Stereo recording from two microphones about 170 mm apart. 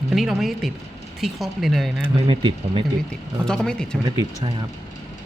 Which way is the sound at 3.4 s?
5° left (ahead or behind).